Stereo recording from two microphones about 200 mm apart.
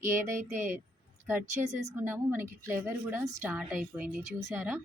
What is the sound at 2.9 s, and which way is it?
A woman's voice, 5° right (ahead or behind).